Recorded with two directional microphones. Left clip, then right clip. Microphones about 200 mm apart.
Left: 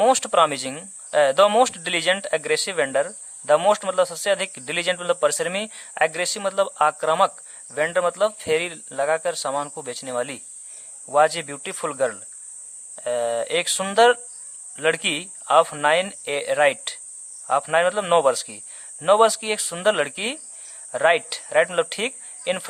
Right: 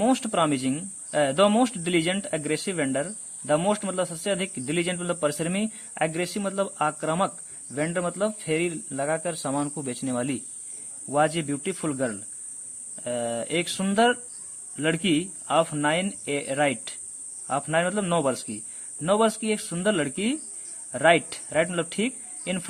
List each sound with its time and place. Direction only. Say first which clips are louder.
0.0 s speech: left 6 dB; 30° left (ahead or behind)